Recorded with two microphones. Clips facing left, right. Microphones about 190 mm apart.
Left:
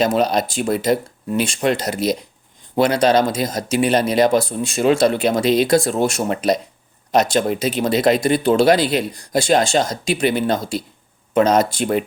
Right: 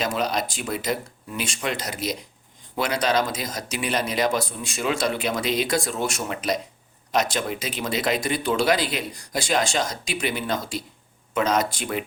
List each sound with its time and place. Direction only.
0.0 s speech: 30° left (ahead or behind)